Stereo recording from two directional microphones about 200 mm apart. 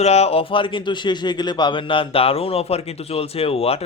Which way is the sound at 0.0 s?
30° left (ahead or behind).